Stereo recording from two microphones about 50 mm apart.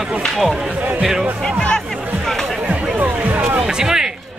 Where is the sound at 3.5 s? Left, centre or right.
Centre.